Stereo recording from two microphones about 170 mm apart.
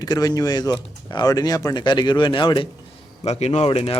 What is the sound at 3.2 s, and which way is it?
Speech, 40° left (ahead or behind).